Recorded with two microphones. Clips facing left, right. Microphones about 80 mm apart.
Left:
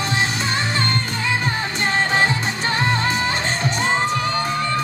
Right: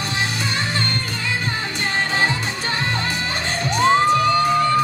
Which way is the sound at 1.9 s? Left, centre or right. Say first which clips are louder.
Left 2 dB; left.